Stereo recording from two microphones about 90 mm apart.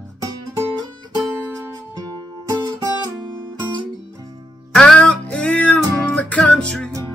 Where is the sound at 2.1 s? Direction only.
45° right (ahead or behind).